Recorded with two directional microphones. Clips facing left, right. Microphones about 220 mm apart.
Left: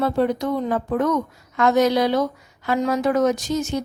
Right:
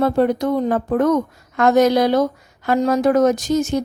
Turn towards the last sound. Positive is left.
turn(degrees=-50)  # may be behind; listen again after turning